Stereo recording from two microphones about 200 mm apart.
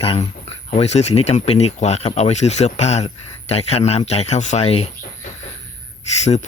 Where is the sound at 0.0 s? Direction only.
30° left (ahead or behind).